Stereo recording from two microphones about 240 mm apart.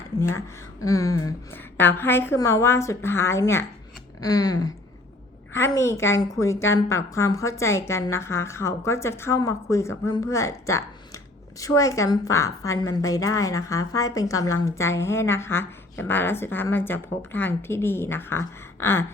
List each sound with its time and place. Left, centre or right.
0.3 s a woman's voice: centre